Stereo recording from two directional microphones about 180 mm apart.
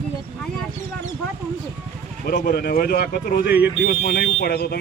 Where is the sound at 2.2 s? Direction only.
55° left (ahead or behind).